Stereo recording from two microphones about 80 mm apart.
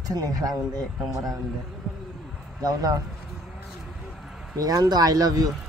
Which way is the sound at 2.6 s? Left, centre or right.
Right.